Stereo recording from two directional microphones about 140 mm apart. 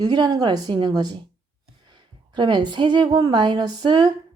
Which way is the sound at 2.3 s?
35° right (ahead or behind).